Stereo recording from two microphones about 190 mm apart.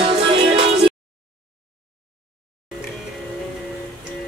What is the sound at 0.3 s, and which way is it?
Music, 30° right (ahead or behind).